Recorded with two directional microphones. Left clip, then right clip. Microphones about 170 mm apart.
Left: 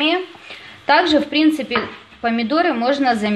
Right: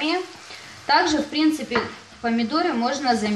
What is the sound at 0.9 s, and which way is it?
Speech, 45° left (ahead or behind).